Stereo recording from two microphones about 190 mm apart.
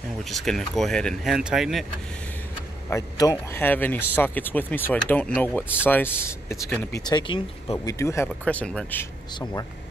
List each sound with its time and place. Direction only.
0.2 s speech: centre (ahead or behind)
2.9 s speech: 15° left (ahead or behind)
9.4 s speech: 20° left (ahead or behind)